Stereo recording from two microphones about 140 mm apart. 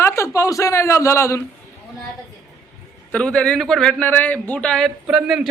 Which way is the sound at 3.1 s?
5° left (ahead or behind).